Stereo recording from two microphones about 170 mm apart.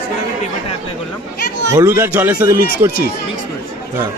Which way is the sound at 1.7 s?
15° right (ahead or behind).